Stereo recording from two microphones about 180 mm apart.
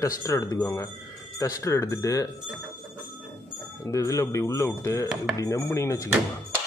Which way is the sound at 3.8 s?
20° left (ahead or behind).